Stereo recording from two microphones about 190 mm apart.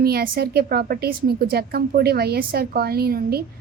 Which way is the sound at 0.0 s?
55° right (ahead or behind).